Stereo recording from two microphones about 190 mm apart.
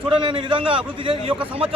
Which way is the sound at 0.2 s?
25° right (ahead or behind).